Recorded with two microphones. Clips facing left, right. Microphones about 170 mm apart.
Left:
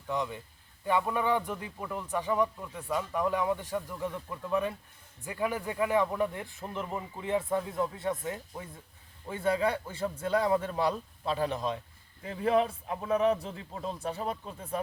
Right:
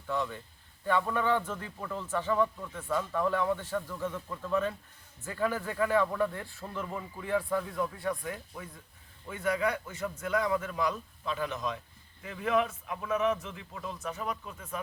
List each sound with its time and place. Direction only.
0.1 s a man's voice: 15° left (ahead or behind); by 14.8 s 30° left (ahead or behind)